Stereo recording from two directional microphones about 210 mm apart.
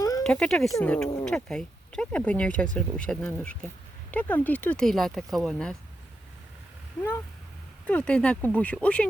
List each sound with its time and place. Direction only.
0.2 s speech: 5° left (ahead or behind)
7.9 s speech: 5° left (ahead or behind)